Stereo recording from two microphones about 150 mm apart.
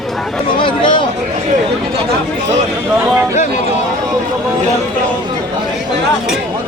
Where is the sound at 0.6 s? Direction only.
35° left (ahead or behind).